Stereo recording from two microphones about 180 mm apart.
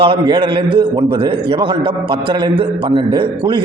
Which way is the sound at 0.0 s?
25° right (ahead or behind).